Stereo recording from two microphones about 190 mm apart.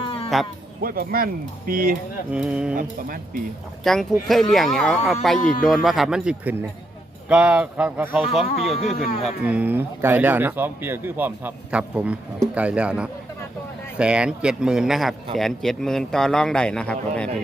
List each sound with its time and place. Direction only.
0.0 s sheep: 30° left (ahead or behind)
0.8 s speech: 50° right (ahead or behind)
2.3 s a man's voice: 5° right (ahead or behind)
2.7 s speech: 45° right (ahead or behind)
3.9 s a man's voice: centre (ahead or behind)
5.4 s speech: 45° left (ahead or behind)
5.6 s a man's voice: centre (ahead or behind)